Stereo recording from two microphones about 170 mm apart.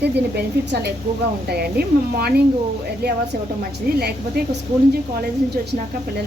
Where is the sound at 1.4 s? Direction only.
70° right (ahead or behind).